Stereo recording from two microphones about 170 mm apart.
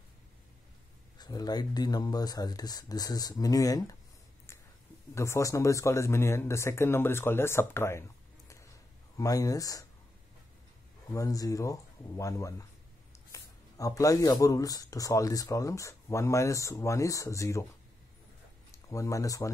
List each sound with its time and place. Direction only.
1.1 s speech: 25° left (ahead or behind)
5.1 s speech: 15° left (ahead or behind)
9.1 s speech: 20° left (ahead or behind)
11.1 s speech: 20° left (ahead or behind)
18.7 s speech: 20° left (ahead or behind)